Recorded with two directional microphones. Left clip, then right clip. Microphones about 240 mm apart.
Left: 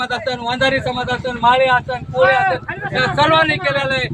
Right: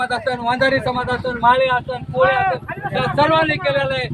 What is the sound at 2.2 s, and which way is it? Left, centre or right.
Speech, left.